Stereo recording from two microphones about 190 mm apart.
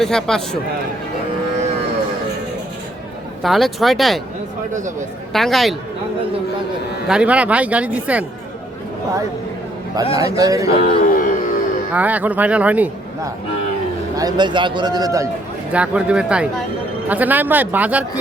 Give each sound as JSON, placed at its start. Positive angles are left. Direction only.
{"t": 0.0, "sound": "speech", "side_deg": 5}
{"t": 3.4, "sound": "speech", "side_deg": 0}
{"t": 5.3, "sound": "speech", "side_deg": 0}
{"t": 7.1, "sound": "speech", "side_deg": -5}
{"t": 10.2, "sound": "a man's voice", "side_deg": -20}
{"t": 10.8, "sound": "music", "side_deg": 45}
{"t": 11.9, "sound": "speech", "side_deg": -10}
{"t": 14.2, "sound": "a man's voice", "side_deg": -20}
{"t": 15.7, "sound": "speech", "side_deg": -5}